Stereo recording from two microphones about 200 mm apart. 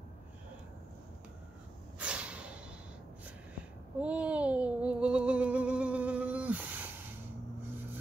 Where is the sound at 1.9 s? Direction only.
5° right (ahead or behind).